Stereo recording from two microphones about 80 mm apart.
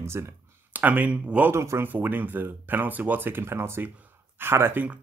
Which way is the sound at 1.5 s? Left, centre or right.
Right.